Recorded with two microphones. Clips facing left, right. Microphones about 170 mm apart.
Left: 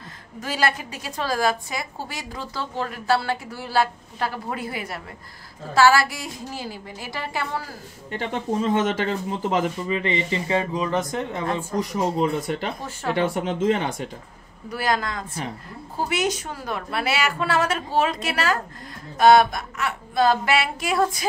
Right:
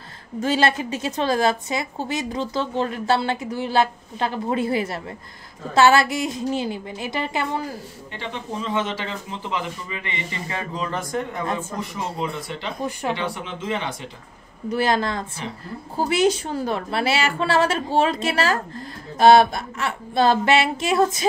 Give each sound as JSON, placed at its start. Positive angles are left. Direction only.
{"t": 0.4, "sound": "a woman's voice", "side_deg": -25}
{"t": 8.1, "sound": "speech", "side_deg": 45}
{"t": 11.7, "sound": "speech", "side_deg": 40}
{"t": 14.7, "sound": "a woman's voice", "side_deg": -25}